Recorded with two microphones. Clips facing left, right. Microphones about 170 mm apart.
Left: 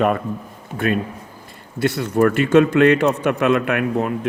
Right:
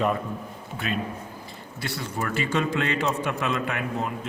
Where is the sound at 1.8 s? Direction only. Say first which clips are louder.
Left 14 dB; 55° left (ahead or behind).